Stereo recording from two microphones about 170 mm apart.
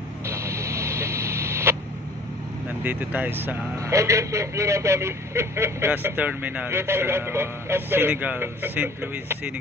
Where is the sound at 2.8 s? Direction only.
10° right (ahead or behind).